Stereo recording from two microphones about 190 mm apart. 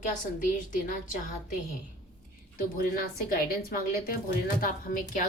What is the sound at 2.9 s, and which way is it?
A woman's voice, 45° left (ahead or behind).